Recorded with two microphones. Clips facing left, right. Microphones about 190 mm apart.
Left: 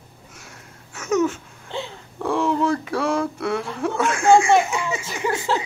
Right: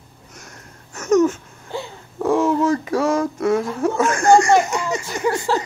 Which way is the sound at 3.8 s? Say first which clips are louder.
Right 4 dB; 40° right (ahead or behind).